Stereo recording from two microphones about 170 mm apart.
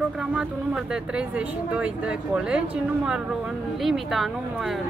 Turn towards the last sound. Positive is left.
turn(degrees=0)  # may be behind; listen again after turning